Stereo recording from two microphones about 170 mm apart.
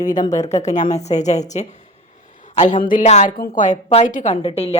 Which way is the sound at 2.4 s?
45° left (ahead or behind).